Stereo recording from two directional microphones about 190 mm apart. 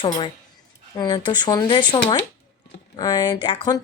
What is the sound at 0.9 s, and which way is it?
Speech, 20° left (ahead or behind).